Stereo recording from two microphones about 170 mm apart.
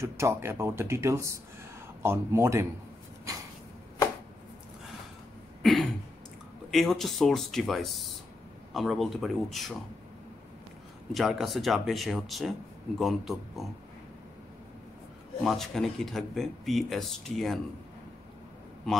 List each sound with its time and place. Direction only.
0.0 s speech: 15° right (ahead or behind)
5.6 s throat clearing: centre (ahead or behind)
6.7 s speech: centre (ahead or behind)
11.1 s speech: centre (ahead or behind)
15.4 s speech: centre (ahead or behind)